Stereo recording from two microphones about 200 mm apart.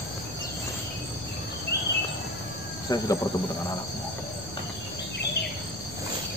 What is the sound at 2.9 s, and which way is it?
Cricket, 15° left (ahead or behind).